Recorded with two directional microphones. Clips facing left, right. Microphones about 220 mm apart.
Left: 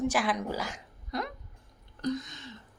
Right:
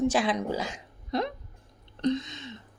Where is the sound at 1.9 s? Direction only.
25° right (ahead or behind).